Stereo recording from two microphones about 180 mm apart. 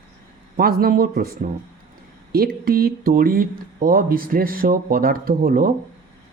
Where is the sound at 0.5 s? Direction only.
55° right (ahead or behind).